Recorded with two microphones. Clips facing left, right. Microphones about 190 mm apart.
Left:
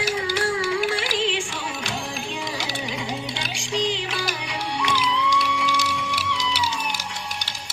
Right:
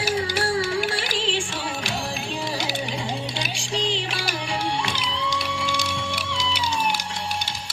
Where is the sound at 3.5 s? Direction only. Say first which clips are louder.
Left 3 dB; 30° right (ahead or behind).